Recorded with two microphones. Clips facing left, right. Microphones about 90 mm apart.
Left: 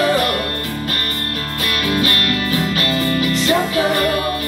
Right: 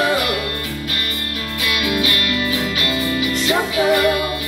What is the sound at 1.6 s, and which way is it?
Music, 40° left (ahead or behind).